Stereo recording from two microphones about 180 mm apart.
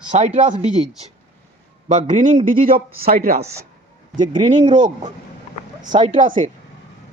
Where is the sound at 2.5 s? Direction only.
50° right (ahead or behind).